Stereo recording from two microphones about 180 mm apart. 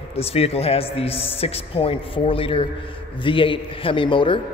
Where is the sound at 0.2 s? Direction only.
35° left (ahead or behind).